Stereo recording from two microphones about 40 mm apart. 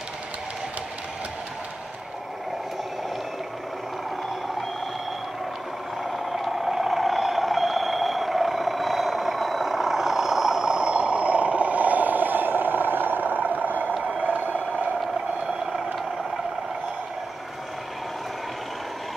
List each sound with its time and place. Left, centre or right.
6.1 s vehicle: centre; by 14.6 s right